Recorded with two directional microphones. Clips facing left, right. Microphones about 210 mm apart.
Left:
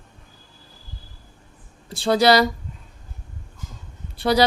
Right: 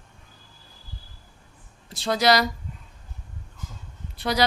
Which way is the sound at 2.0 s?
30° left (ahead or behind).